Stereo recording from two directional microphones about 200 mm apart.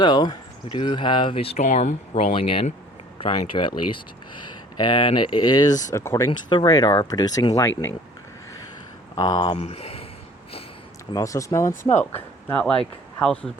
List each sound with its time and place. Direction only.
0.0 s speech: 20° left (ahead or behind)
9.1 s speech: 20° left (ahead or behind)
11.1 s speech: 15° left (ahead or behind)
11.8 s speech: 35° left (ahead or behind)
12.1 s speech: 5° left (ahead or behind)